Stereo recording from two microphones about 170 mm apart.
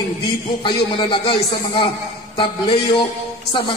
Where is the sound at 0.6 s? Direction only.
30° left (ahead or behind).